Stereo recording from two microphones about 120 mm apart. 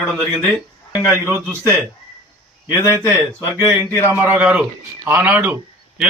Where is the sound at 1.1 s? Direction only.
20° right (ahead or behind).